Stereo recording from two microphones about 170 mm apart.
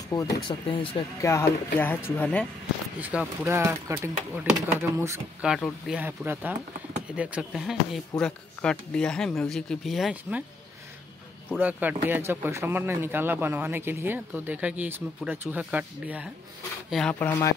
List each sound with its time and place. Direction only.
0.1 s speech: 25° left (ahead or behind)
1.2 s speech: 15° left (ahead or behind)
3.0 s speech: 10° right (ahead or behind)
5.4 s speech: 5° right (ahead or behind)
11.5 s speech: 10° right (ahead or behind)
16.9 s speech: 5° left (ahead or behind)